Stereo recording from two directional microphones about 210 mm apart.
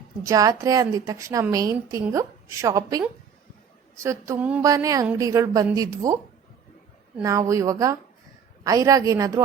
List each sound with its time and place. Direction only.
0.2 s a woman's voice: 15° right (ahead or behind)
4.0 s a woman's voice: 15° right (ahead or behind)
7.2 s a woman's voice: 15° right (ahead or behind)